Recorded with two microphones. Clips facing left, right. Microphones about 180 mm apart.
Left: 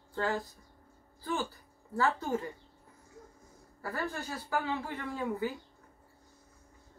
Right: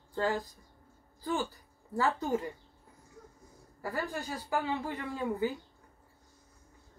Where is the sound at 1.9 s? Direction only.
15° right (ahead or behind).